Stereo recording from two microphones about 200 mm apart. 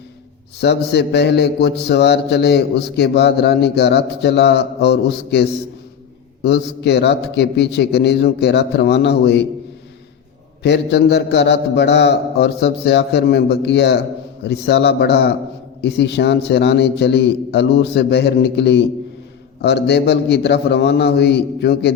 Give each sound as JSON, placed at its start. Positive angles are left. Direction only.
{"t": 0.6, "sound": "a man's voice", "side_deg": 55}
{"t": 10.6, "sound": "a man's voice", "side_deg": 55}